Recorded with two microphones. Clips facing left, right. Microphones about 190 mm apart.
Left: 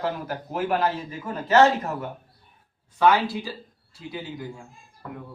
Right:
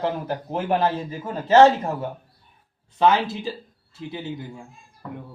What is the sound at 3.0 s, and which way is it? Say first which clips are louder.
Speech: right 1 dB; 25° right (ahead or behind).